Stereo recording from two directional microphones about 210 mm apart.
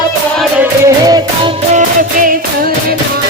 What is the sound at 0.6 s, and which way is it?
Music, 15° right (ahead or behind).